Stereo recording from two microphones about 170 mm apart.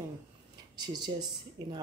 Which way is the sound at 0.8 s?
25° right (ahead or behind).